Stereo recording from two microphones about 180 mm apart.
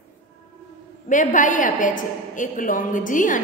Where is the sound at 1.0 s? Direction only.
45° left (ahead or behind).